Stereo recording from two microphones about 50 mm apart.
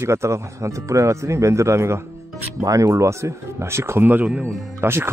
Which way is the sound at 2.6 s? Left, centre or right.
Right.